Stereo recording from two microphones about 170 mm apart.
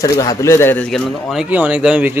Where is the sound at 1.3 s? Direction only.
5° right (ahead or behind).